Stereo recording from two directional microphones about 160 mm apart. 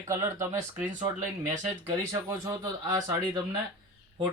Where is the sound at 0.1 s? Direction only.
15° right (ahead or behind).